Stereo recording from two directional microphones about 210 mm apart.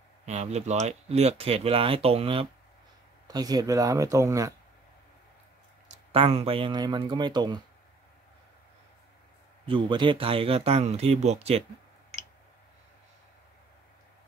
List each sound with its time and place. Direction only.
0.2 s speech: 30° right (ahead or behind); by 4.6 s 15° right (ahead or behind)
6.1 s speech: 30° right (ahead or behind)
9.7 s speech: 25° right (ahead or behind)